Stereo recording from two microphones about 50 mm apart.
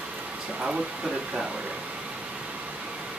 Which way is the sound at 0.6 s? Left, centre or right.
Centre.